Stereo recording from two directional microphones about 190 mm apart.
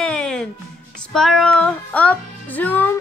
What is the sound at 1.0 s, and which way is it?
Music, centre (ahead or behind).